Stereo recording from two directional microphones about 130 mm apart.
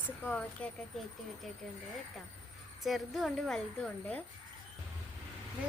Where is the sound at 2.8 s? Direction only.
Centre (ahead or behind).